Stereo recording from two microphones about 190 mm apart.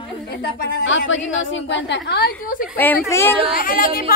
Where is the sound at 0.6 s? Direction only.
55° left (ahead or behind).